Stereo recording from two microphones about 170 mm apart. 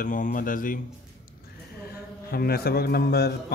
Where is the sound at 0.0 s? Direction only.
50° left (ahead or behind).